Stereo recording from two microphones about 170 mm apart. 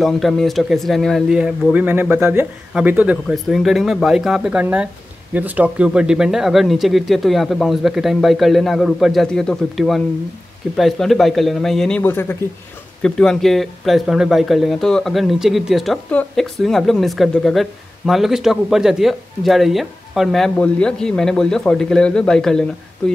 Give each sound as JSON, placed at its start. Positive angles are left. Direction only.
{"t": 0.0, "sound": "speech", "side_deg": 0}